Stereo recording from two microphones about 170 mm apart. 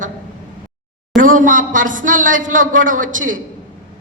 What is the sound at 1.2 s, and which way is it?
A man's voice, 50° right (ahead or behind).